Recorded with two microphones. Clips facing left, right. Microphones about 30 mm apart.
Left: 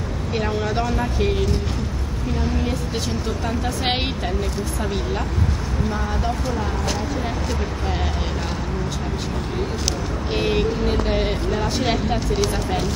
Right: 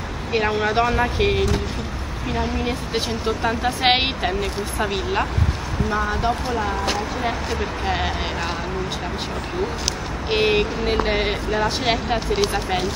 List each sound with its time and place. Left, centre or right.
0.3 s a woman's voice: right
10.3 s a woman's voice: right